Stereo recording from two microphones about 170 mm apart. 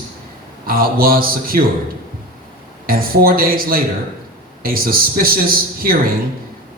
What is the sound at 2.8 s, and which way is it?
A man's voice, 60° right (ahead or behind).